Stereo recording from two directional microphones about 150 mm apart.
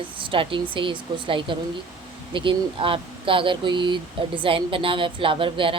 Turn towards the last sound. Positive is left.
turn(degrees=-35)  # may be behind; listen again after turning